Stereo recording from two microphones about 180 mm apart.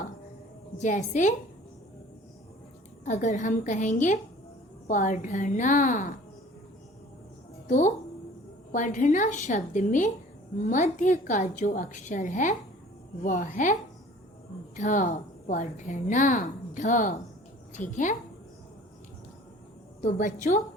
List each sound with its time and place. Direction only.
0.8 s a woman's voice: 45° left (ahead or behind)
3.0 s a woman's voice: 40° left (ahead or behind)
7.7 s a woman's voice: 45° left (ahead or behind)
14.8 s a woman's voice: 45° left (ahead or behind)
20.0 s a woman's voice: 50° left (ahead or behind)